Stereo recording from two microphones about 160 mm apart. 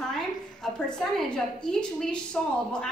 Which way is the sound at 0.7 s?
5° left (ahead or behind).